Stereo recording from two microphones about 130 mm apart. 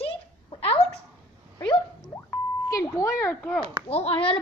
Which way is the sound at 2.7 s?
25° left (ahead or behind).